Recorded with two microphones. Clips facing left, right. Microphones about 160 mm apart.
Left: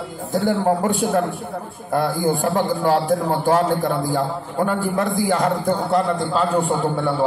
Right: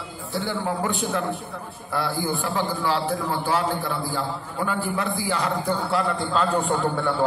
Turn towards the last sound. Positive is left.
turn(degrees=10)  # may be behind; listen again after turning